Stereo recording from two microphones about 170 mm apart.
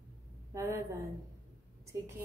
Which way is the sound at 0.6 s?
15° right (ahead or behind).